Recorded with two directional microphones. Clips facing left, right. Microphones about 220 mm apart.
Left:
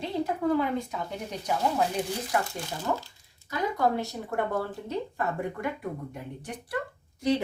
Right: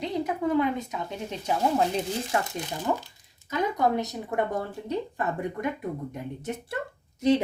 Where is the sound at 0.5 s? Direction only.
20° right (ahead or behind).